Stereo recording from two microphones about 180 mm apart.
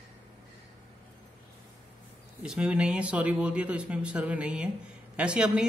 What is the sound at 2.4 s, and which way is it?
Speech, 5° right (ahead or behind).